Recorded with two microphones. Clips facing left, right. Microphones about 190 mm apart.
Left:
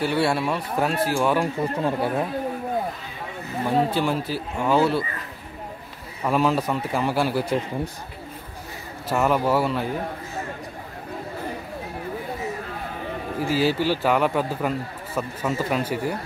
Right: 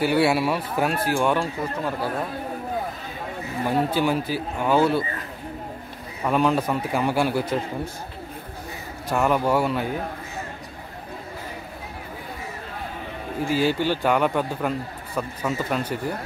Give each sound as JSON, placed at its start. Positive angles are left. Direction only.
{"t": 0.0, "sound": "a man's voice", "side_deg": -5}
{"t": 1.4, "sound": "speech", "side_deg": 25}
{"t": 3.6, "sound": "a man's voice", "side_deg": 0}
{"t": 6.2, "sound": "a man's voice", "side_deg": 0}
{"t": 9.1, "sound": "a man's voice", "side_deg": 5}
{"t": 13.5, "sound": "a man's voice", "side_deg": 5}